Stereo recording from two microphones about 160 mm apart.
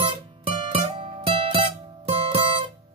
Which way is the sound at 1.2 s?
35° right (ahead or behind).